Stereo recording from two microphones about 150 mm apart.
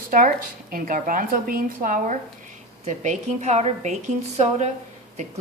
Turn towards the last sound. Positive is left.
turn(degrees=-45)  # may be behind; listen again after turning